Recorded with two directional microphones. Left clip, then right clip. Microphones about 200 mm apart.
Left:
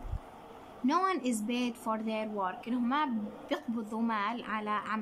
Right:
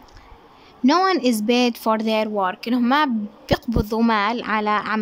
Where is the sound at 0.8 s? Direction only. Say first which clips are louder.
Right 12 dB; 45° right (ahead or behind).